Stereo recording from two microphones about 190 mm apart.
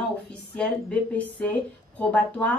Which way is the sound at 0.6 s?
5° left (ahead or behind).